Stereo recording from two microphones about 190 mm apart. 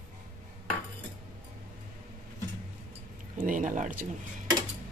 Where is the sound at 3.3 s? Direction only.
45° right (ahead or behind).